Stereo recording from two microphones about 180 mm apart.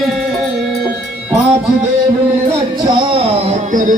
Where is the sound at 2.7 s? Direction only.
25° right (ahead or behind); by 3.9 s 45° right (ahead or behind).